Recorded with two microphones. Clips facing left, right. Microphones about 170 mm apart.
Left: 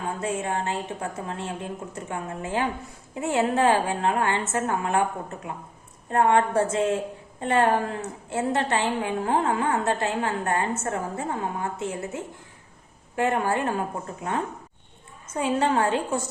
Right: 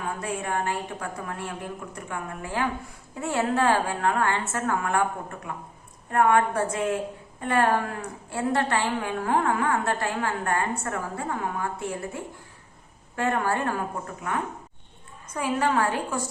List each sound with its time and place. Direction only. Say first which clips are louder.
0.1 s a woman's voice: left 2 dB; 25° left (ahead or behind)